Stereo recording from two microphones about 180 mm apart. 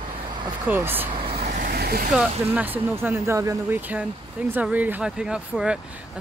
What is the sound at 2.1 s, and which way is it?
Speech, 10° right (ahead or behind).